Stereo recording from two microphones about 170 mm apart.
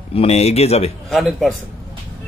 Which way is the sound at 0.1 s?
35° left (ahead or behind).